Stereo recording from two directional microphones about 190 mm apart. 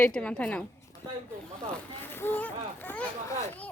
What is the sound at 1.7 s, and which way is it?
Speech, 10° left (ahead or behind).